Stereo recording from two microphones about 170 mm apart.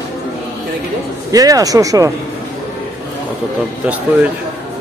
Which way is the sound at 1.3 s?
20° right (ahead or behind).